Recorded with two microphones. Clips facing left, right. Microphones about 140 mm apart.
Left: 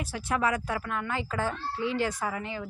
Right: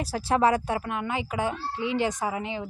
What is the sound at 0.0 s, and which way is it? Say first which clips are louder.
Speech: right 6 dB; 35° right (ahead or behind).